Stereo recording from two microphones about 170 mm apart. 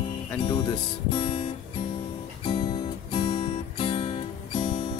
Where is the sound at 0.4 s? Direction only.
30° left (ahead or behind).